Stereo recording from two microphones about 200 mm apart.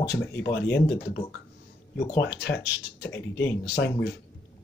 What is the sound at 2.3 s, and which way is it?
Speech, 60° left (ahead or behind).